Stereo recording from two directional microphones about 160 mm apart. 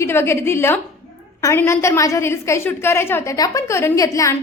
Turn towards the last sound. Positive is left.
turn(degrees=20)  # may be behind; listen again after turning